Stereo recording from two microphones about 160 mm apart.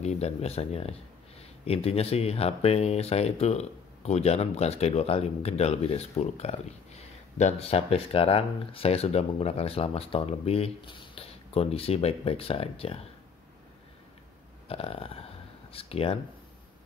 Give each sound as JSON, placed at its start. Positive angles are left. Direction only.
{"t": 0.0, "sound": "speech", "side_deg": 40}
{"t": 14.7, "sound": "speech", "side_deg": 35}